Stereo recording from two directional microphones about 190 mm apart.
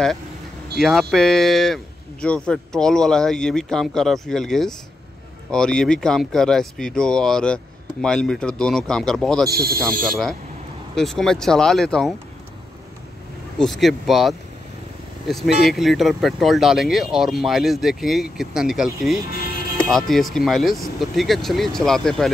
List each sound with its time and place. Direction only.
0.7 s speech: centre (ahead or behind)
9.5 s speech: 50° right (ahead or behind)
10.0 s speech: centre (ahead or behind)
13.6 s speech: centre (ahead or behind)